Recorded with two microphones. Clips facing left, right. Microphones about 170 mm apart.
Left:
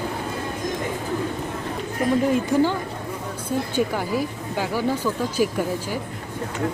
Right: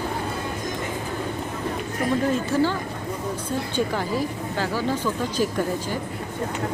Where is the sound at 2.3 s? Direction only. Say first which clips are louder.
Left 2 dB; 15° left (ahead or behind).